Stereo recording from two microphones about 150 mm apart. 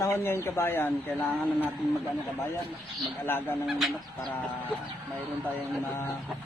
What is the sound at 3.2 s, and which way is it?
Speech, 15° left (ahead or behind).